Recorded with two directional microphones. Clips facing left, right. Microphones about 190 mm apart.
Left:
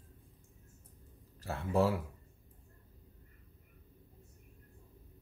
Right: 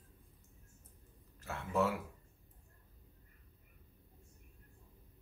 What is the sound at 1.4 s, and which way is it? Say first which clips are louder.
Speech: left 4 dB; 35° left (ahead or behind).